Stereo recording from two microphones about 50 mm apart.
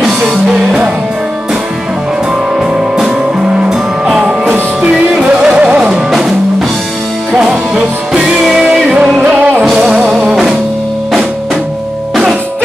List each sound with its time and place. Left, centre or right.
0.0 s music: centre
4.0 s music: centre
5.4 s music: centre
7.3 s music: centre
9.2 s music: right
9.7 s music: centre